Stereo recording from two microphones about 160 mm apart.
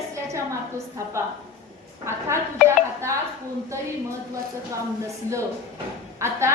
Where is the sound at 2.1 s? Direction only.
15° right (ahead or behind).